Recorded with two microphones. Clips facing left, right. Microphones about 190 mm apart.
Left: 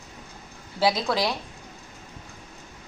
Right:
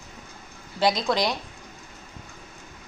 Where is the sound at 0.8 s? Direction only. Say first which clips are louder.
Right 1 dB; 5° left (ahead or behind).